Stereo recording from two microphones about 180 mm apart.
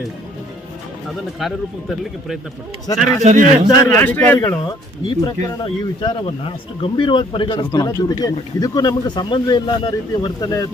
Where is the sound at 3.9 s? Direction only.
10° left (ahead or behind).